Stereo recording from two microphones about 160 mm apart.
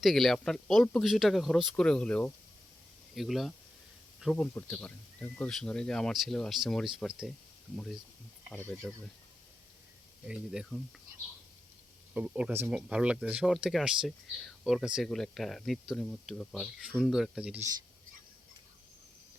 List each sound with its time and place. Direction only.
0.0 s speech: centre (ahead or behind)
8.5 s speech: 10° left (ahead or behind)
10.2 s speech: 5° right (ahead or behind)
12.1 s speech: 5° right (ahead or behind)